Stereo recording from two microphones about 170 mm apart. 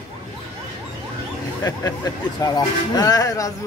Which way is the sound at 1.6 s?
20° left (ahead or behind).